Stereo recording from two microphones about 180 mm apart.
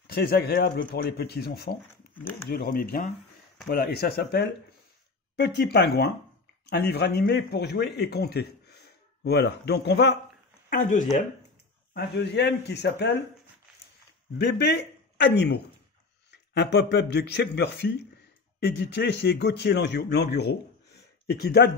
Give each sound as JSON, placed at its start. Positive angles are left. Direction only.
{"t": 0.0, "sound": "speech", "side_deg": 60}
{"t": 5.3, "sound": "a man's voice", "side_deg": 70}
{"t": 10.7, "sound": "speech", "side_deg": 45}
{"t": 11.9, "sound": "speech", "side_deg": 70}
{"t": 14.4, "sound": "a man's voice", "side_deg": 70}